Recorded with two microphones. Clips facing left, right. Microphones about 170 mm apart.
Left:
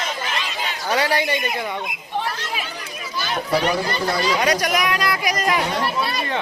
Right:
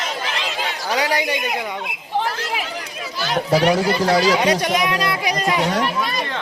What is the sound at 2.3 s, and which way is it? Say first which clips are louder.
Chatter: right 3 dB; 90° right.